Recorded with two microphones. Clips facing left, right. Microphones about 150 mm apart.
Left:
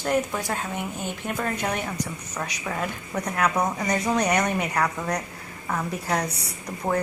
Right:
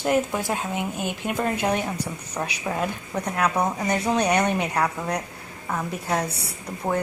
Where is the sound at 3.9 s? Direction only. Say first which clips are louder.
Right 1 dB; 25° right (ahead or behind).